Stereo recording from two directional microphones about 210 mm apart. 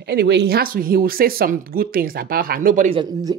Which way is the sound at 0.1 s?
50° right (ahead or behind).